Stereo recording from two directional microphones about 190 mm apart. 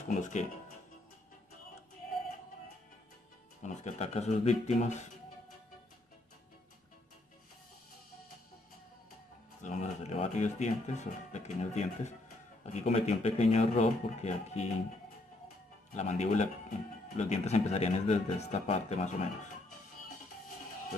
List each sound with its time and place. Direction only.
0.1 s speech: 40° left (ahead or behind)
3.6 s speech: 35° left (ahead or behind)
9.6 s speech: 40° left (ahead or behind)
15.9 s speech: 40° left (ahead or behind)